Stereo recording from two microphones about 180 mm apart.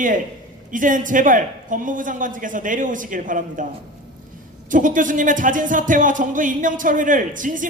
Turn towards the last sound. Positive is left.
turn(degrees=-45)  # may be behind; listen again after turning